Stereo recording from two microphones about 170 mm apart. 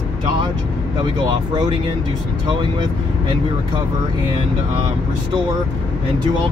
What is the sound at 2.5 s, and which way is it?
Speech, 25° right (ahead or behind).